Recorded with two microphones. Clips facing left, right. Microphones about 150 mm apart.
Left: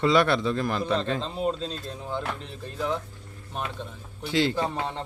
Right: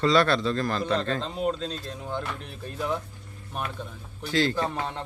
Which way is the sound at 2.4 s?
10° right (ahead or behind).